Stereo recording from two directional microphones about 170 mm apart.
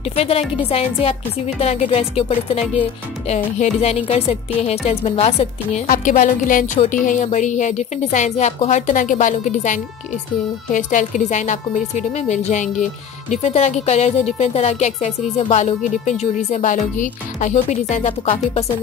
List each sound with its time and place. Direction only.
0.1 s a woman's voice: 35° left (ahead or behind)
5.9 s a woman's voice: 50° left (ahead or behind)